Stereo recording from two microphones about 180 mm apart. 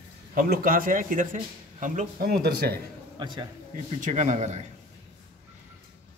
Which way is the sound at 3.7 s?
45° right (ahead or behind).